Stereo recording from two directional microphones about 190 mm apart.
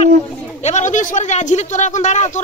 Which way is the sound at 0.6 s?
40° left (ahead or behind).